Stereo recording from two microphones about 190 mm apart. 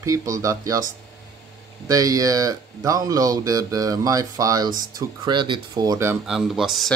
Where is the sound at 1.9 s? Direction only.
20° right (ahead or behind).